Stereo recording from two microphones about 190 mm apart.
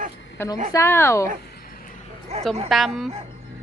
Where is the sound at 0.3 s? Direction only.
20° left (ahead or behind).